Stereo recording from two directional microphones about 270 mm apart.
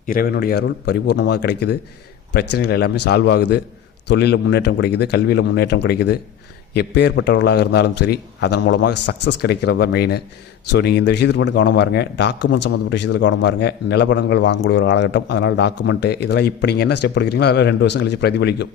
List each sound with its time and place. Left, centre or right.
0.0 s speech: left